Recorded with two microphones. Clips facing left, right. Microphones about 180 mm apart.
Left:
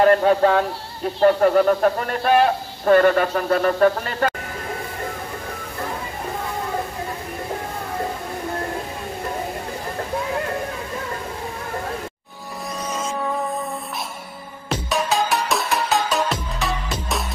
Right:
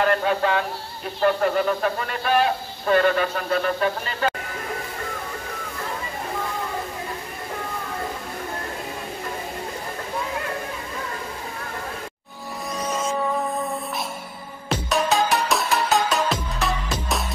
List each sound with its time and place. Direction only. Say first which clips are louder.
0.0 s a man's voice: left 6 dB; 40° left (ahead or behind)
14.7 s music: even; centre (ahead or behind)